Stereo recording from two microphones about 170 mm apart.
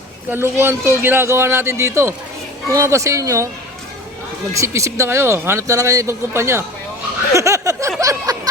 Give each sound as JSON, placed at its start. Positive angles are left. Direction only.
{"t": 0.3, "sound": "speech", "side_deg": -15}
{"t": 4.5, "sound": "speech", "side_deg": -15}
{"t": 7.3, "sound": "a sound", "side_deg": -20}